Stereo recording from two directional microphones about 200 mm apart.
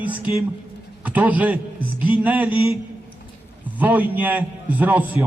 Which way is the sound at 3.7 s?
10° right (ahead or behind).